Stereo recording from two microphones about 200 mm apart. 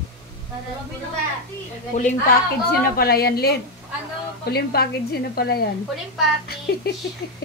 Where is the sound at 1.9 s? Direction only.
35° left (ahead or behind).